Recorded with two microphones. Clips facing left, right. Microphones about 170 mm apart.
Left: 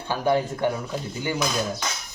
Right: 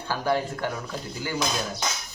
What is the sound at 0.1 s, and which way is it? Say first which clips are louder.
Speech: left 3 dB; 20° left (ahead or behind).